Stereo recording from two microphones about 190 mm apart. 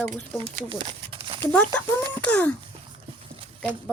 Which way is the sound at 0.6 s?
25° right (ahead or behind).